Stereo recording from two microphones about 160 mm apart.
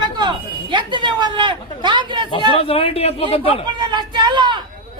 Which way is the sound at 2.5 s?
35° left (ahead or behind).